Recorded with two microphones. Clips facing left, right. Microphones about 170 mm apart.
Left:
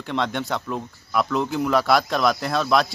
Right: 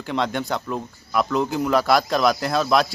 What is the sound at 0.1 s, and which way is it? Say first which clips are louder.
Speech: right 1 dB; centre (ahead or behind).